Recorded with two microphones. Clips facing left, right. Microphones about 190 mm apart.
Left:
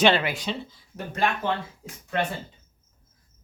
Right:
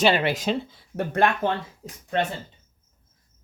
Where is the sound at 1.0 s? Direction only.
55° right (ahead or behind).